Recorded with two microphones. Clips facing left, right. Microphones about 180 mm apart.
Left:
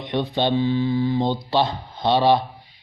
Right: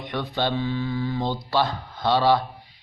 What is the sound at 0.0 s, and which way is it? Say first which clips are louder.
Speech: left 4 dB; 20° left (ahead or behind).